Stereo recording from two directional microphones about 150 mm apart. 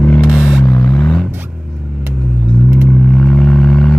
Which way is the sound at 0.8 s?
5° left (ahead or behind).